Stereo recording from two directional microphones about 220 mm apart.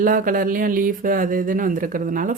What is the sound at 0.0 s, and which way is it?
Speech, 40° right (ahead or behind).